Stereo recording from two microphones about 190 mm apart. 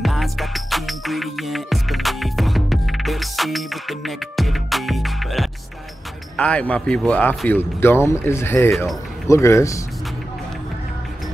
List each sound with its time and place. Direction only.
0.0 s music: centre (ahead or behind)
6.3 s speech: 5° left (ahead or behind)